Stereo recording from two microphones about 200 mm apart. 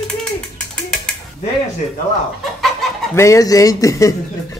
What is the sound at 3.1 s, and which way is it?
Speech, 15° left (ahead or behind).